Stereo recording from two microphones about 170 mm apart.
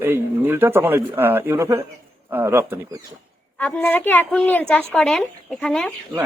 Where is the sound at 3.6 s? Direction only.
10° left (ahead or behind).